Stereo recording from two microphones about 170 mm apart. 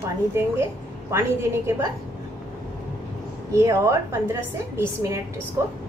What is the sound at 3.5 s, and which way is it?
A woman's voice, 20° right (ahead or behind).